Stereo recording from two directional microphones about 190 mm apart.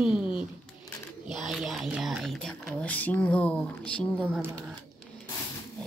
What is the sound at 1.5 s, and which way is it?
Speech, centre (ahead or behind).